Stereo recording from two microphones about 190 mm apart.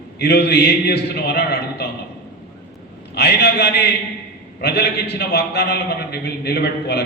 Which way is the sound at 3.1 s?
60° left (ahead or behind).